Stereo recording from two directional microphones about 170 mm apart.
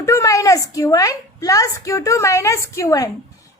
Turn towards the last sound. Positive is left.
turn(degrees=20)  # may be behind; listen again after turning